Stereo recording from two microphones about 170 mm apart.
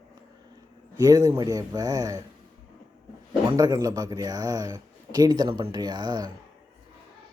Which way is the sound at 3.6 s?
20° right (ahead or behind).